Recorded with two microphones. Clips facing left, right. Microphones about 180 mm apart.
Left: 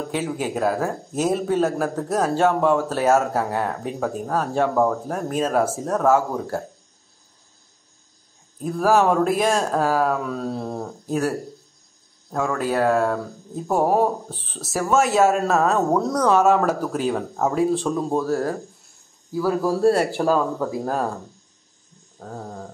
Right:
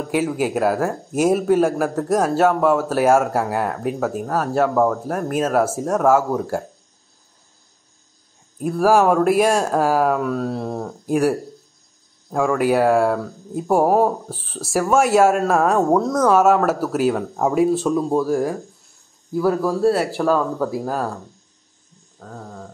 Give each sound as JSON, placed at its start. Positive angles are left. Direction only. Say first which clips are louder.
{"t": 0.1, "sound": "speech", "louder": "right 7 dB", "side_deg": -10}
{"t": 8.5, "sound": "speech", "louder": "right 3 dB", "side_deg": -10}
{"t": 11.1, "sound": "speech", "louder": "right 5 dB", "side_deg": -10}
{"t": 19.6, "sound": "speech", "louder": "even", "side_deg": 0}
{"t": 22.2, "sound": "a sound", "louder": "left 2 dB", "side_deg": 15}